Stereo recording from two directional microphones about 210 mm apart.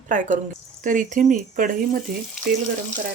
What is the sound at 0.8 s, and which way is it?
Speech, 40° right (ahead or behind).